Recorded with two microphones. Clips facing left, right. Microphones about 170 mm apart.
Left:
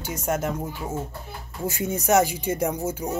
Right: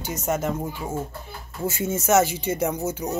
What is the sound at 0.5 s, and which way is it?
Speech, 10° right (ahead or behind).